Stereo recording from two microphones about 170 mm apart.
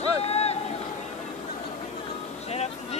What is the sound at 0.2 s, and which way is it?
Boat, 40° left (ahead or behind).